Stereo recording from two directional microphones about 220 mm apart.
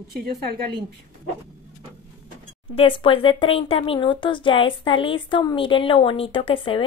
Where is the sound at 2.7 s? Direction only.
25° left (ahead or behind).